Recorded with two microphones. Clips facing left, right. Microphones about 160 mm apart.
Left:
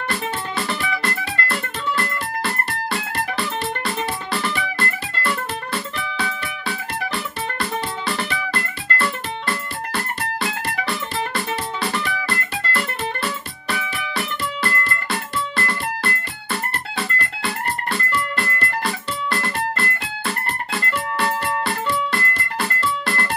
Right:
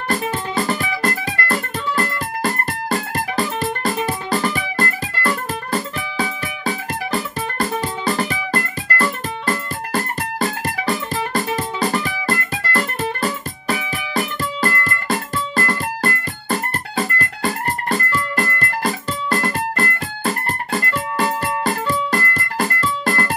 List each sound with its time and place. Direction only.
0.1 s music: 40° right (ahead or behind)